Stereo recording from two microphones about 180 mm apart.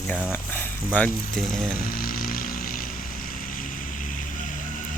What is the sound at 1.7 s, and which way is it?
Vehicle, 50° left (ahead or behind).